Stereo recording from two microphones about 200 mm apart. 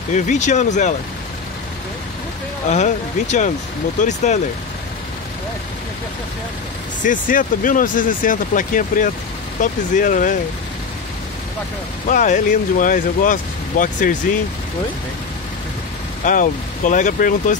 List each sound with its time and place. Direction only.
0.1 s speech: 35° left (ahead or behind)
2.7 s speech: 35° left (ahead or behind)
7.0 s speech: 40° left (ahead or behind)
12.1 s speech: 40° left (ahead or behind)
16.3 s speech: 40° left (ahead or behind)